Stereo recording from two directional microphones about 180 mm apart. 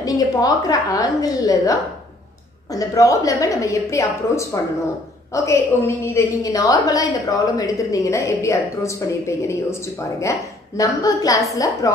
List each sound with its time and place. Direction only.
0.0 s a woman's voice: 20° left (ahead or behind)